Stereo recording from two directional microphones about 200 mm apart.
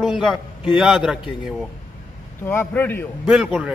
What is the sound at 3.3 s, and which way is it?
Speech, 5° right (ahead or behind).